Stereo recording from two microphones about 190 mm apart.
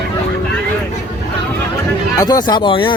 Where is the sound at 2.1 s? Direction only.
20° left (ahead or behind).